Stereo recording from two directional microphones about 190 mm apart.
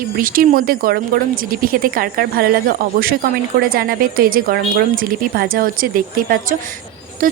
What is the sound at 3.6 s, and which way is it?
Speech, 50° right (ahead or behind).